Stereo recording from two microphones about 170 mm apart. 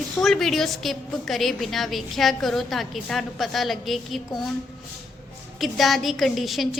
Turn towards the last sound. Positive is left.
turn(degrees=0)  # may be behind; listen again after turning